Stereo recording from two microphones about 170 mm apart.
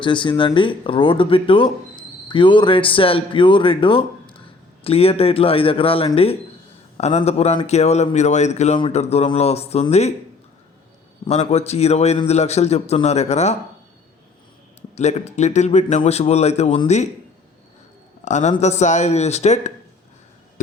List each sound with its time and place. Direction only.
0.0 s a man's voice: 30° left (ahead or behind)
11.3 s a man's voice: 40° left (ahead or behind)
14.8 s a man's voice: 40° left (ahead or behind)
18.3 s speech: 45° left (ahead or behind)